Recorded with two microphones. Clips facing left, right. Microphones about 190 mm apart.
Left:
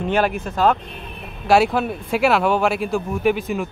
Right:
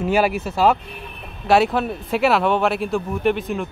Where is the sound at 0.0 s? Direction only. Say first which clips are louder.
Right 1 dB; 5° right (ahead or behind).